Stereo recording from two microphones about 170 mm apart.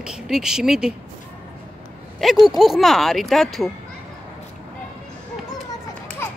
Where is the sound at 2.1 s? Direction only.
Centre (ahead or behind).